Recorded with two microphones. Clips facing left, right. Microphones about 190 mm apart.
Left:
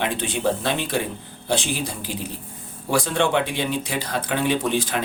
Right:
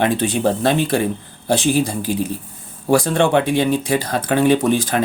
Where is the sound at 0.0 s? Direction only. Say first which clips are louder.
Right 6 dB; 45° right (ahead or behind).